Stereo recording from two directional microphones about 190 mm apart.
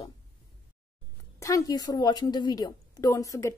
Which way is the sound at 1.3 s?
15° left (ahead or behind).